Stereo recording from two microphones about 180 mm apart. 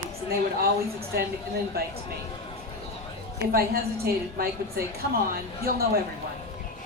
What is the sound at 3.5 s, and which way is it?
Speech, 55° right (ahead or behind).